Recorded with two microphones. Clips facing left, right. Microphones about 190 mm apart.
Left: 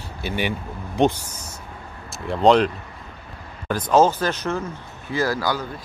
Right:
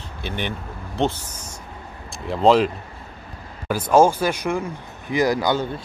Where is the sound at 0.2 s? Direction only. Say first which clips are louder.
Left 3 dB; 10° left (ahead or behind).